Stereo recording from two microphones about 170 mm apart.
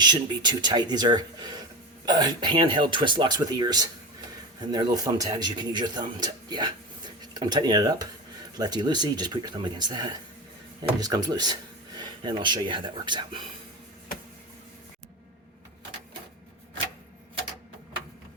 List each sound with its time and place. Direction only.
0.0 s speech: 25° right (ahead or behind)